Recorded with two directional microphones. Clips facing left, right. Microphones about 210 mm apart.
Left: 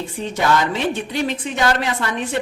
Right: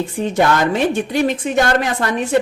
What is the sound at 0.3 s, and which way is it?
A woman's voice, 50° right (ahead or behind).